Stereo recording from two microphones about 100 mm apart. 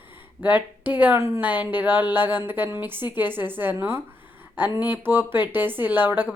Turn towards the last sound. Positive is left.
turn(degrees=-20)  # may be behind; listen again after turning